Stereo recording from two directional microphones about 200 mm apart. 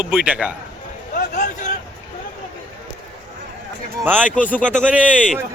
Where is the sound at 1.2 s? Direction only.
40° left (ahead or behind).